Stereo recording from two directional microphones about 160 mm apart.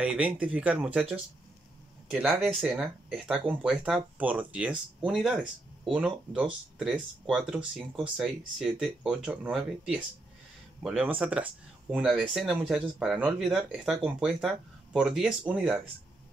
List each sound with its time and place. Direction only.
0.0 s speech: 5° right (ahead or behind)